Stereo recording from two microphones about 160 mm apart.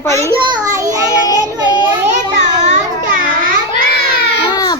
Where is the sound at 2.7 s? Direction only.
50° right (ahead or behind).